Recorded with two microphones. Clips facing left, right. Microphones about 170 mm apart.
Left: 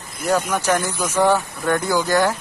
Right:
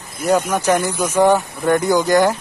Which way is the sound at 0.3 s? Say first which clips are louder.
Right 3 dB; 10° right (ahead or behind).